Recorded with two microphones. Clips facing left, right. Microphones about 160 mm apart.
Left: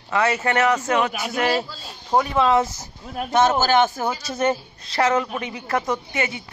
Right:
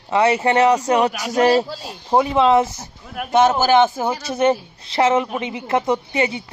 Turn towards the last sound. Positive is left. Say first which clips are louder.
# right 5 dB
turn(degrees=-25)  # may be behind; listen again after turning